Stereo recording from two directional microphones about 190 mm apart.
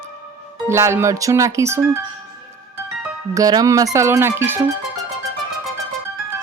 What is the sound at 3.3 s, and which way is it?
Speech, 20° right (ahead or behind).